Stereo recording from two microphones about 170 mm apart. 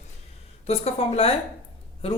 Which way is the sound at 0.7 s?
35° left (ahead or behind).